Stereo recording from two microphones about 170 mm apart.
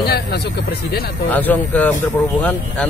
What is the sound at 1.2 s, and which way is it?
Speech, 10° left (ahead or behind).